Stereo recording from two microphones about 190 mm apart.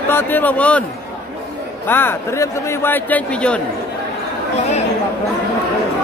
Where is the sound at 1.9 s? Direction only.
10° left (ahead or behind).